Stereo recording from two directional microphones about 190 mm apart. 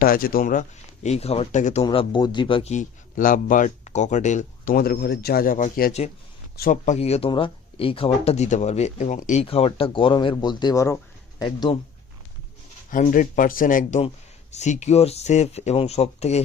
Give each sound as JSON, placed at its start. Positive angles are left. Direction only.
{"t": 0.0, "sound": "speech", "side_deg": 50}
{"t": 1.0, "sound": "speech", "side_deg": 35}
{"t": 1.8, "sound": "speech", "side_deg": 25}
{"t": 12.9, "sound": "speech", "side_deg": 45}